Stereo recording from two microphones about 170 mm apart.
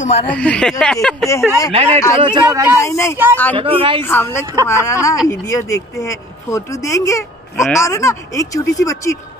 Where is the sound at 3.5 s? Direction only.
30° right (ahead or behind).